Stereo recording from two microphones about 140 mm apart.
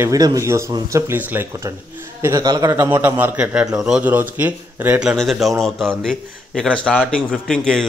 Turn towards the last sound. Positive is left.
turn(degrees=5)  # may be behind; listen again after turning